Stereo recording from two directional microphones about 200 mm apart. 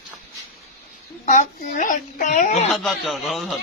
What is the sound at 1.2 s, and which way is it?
Speech, 40° left (ahead or behind).